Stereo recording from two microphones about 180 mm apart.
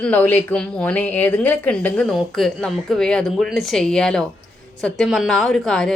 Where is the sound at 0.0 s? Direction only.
10° left (ahead or behind).